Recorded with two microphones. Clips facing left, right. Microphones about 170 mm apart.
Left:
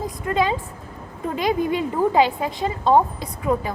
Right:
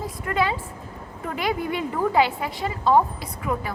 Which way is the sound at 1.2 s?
20° left (ahead or behind).